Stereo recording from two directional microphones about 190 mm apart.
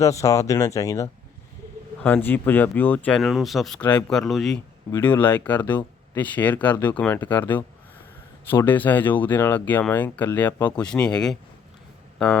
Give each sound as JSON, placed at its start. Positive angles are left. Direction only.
{"t": 0.0, "sound": "speech", "side_deg": 15}